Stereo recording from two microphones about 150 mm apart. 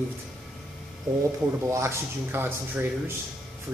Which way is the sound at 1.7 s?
20° right (ahead or behind).